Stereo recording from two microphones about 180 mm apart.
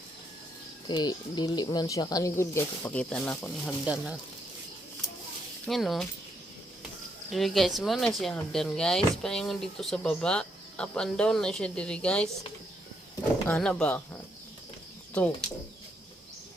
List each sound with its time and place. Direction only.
0.9 s speech: 25° left (ahead or behind); by 3.8 s 10° left (ahead or behind)
5.6 s speech: centre (ahead or behind)
7.3 s speech: centre (ahead or behind)
13.5 s speech: 5° left (ahead or behind)